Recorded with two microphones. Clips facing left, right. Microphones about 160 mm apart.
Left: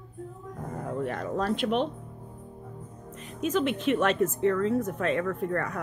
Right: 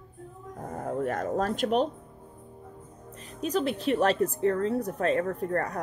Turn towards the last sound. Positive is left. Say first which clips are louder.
# even
turn(degrees=-35)  # may be behind; listen again after turning